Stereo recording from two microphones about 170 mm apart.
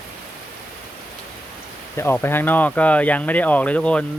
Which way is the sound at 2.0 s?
15° left (ahead or behind).